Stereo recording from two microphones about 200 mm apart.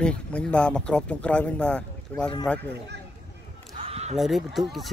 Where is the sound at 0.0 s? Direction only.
5° left (ahead or behind).